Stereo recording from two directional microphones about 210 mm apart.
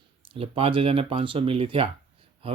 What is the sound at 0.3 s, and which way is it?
Speech, 25° right (ahead or behind).